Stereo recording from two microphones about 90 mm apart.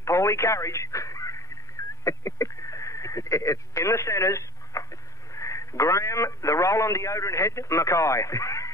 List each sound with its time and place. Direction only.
0.0 s telephone: 35° left (ahead or behind)
2.0 s speech: 35° left (ahead or behind)